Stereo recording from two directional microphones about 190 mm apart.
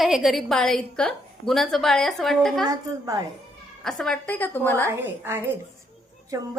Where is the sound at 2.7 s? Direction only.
20° right (ahead or behind).